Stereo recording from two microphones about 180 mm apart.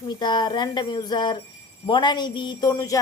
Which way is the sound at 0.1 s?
25° left (ahead or behind).